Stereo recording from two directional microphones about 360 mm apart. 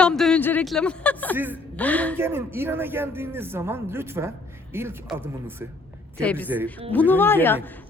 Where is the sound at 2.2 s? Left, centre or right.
Centre.